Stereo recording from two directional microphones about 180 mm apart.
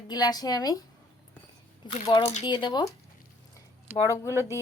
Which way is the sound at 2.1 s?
25° left (ahead or behind).